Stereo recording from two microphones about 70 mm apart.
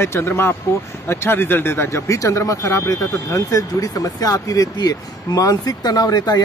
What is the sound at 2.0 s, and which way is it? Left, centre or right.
Speech, left.